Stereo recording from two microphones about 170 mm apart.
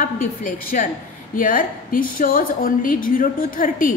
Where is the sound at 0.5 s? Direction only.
55° left (ahead or behind).